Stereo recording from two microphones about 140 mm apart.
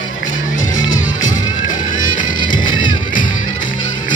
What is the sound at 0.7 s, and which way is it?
Music, 30° left (ahead or behind).